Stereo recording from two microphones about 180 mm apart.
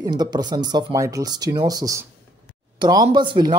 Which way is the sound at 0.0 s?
25° right (ahead or behind).